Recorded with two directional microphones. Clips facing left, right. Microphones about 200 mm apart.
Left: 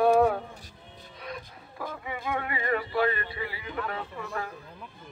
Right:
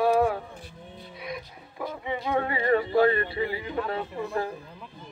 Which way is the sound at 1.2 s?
10° right (ahead or behind).